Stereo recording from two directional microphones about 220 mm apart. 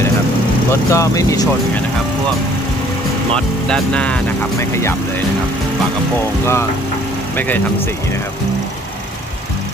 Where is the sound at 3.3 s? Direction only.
5° left (ahead or behind).